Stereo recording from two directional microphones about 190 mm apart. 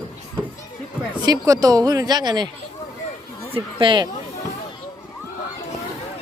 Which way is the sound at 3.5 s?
25° right (ahead or behind).